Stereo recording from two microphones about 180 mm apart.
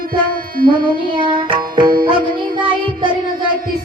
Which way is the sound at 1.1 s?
25° right (ahead or behind).